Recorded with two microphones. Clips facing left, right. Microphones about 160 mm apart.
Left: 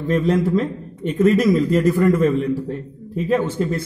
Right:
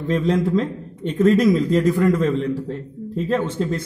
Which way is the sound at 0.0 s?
5° left (ahead or behind).